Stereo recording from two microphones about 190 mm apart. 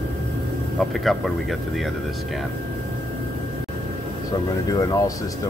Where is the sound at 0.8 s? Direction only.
Centre (ahead or behind).